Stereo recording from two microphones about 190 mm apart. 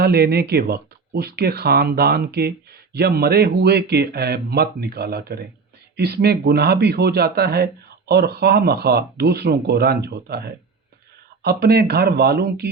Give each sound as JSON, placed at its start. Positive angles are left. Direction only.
{"t": 0.0, "sound": "speech", "side_deg": -55}